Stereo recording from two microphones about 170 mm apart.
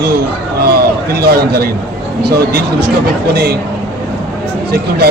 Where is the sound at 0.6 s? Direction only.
70° right (ahead or behind).